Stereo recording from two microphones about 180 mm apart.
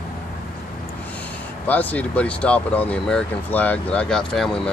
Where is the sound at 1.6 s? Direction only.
10° left (ahead or behind).